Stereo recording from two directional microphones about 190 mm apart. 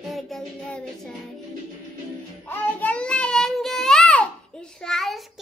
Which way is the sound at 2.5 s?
10° left (ahead or behind).